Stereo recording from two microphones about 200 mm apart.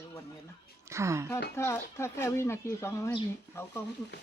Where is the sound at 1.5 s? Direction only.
15° left (ahead or behind).